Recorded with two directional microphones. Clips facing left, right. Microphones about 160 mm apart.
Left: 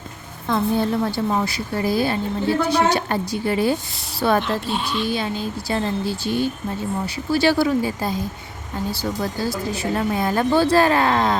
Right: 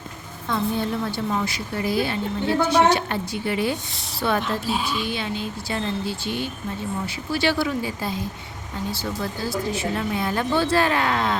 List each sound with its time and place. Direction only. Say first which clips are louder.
0.4 s a woman's voice: left 4 dB; 45° left (ahead or behind)
4.4 s speech: left 1 dB; centre (ahead or behind)
5.0 s speech: left 4 dB; 40° left (ahead or behind)